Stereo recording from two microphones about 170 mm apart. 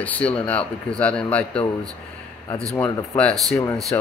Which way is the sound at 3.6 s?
15° left (ahead or behind).